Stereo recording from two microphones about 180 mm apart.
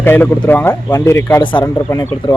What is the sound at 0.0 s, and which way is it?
A man's voice, 10° left (ahead or behind).